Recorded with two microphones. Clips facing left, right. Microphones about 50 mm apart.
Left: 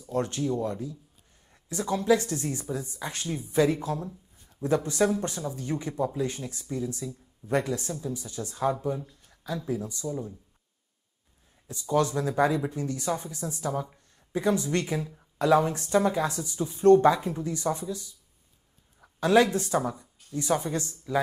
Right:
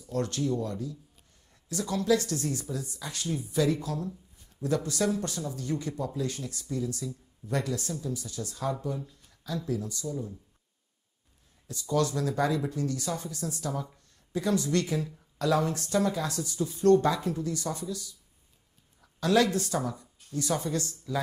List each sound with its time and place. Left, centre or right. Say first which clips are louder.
0.0 s speech: left 2 dB; left
11.6 s speech: left 2 dB; left